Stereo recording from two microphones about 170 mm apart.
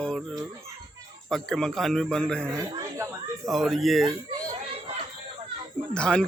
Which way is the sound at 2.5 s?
20° right (ahead or behind).